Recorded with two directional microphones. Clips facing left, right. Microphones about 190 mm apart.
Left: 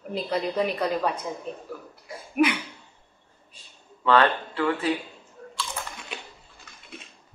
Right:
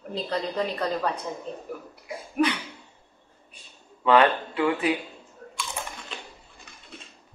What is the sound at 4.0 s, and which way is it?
Speech, 15° right (ahead or behind).